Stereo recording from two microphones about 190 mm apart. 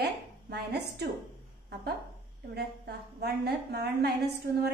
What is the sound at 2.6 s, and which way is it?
A woman's voice, 55° right (ahead or behind).